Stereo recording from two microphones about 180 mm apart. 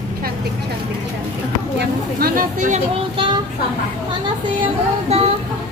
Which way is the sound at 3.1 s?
25° right (ahead or behind).